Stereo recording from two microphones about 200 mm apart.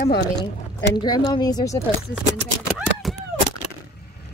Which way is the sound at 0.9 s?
20° left (ahead or behind).